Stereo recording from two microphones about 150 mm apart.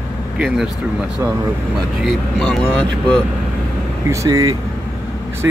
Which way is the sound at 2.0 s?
5° left (ahead or behind).